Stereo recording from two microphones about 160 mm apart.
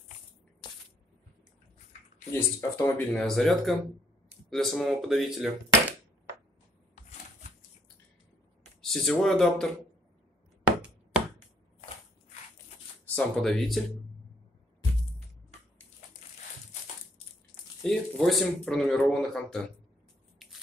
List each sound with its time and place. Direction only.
0.6 s a sound: 30° left (ahead or behind)
2.3 s speech: 10° left (ahead or behind)
8.8 s speech: 5° left (ahead or behind)
13.0 s speech: 5° left (ahead or behind)
17.8 s speech: centre (ahead or behind)